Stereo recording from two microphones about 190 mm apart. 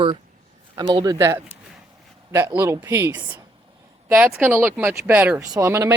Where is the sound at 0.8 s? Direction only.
20° right (ahead or behind).